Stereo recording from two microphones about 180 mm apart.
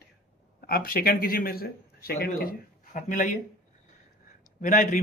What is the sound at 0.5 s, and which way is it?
A man's voice, 55° left (ahead or behind).